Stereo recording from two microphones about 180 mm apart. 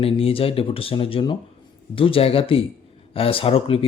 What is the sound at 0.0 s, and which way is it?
Speech, 30° left (ahead or behind).